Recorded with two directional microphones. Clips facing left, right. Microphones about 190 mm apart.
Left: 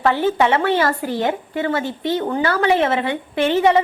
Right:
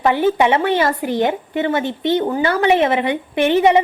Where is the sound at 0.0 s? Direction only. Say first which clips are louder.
Right 2 dB; 15° right (ahead or behind).